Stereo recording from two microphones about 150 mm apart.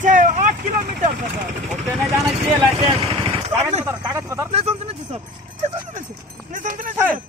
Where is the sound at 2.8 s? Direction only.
35° right (ahead or behind).